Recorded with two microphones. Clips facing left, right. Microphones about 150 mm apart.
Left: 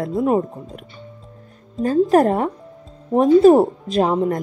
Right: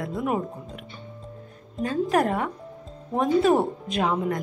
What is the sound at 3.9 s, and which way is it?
Speech, 35° left (ahead or behind).